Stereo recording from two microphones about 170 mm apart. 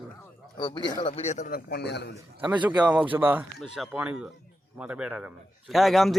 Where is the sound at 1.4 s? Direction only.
65° left (ahead or behind).